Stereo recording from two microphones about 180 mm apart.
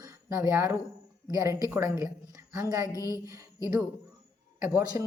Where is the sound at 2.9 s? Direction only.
20° left (ahead or behind).